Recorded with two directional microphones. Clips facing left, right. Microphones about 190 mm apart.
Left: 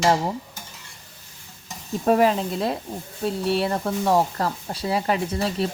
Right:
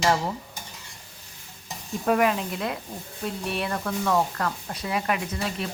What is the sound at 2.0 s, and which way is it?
Speech, 30° left (ahead or behind).